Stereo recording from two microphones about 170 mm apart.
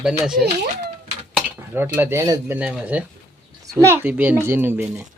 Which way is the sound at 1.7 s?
15° right (ahead or behind).